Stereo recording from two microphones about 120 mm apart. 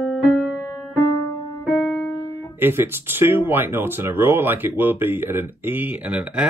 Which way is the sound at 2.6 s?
20° right (ahead or behind).